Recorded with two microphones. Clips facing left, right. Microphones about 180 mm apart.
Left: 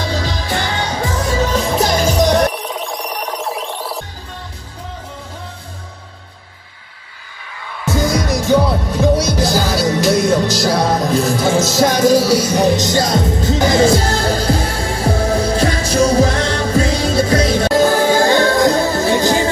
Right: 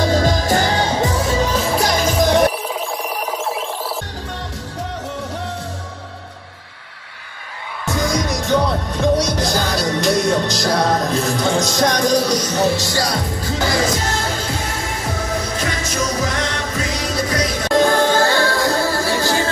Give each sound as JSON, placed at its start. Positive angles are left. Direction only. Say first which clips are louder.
{"t": 0.0, "sound": "music", "louder": "right 5 dB", "side_deg": -45}
{"t": 1.1, "sound": "music", "louder": "left 1 dB", "side_deg": 0}
{"t": 7.8, "sound": "music", "louder": "left 3 dB", "side_deg": 0}
{"t": 17.6, "sound": "music", "louder": "even", "side_deg": 5}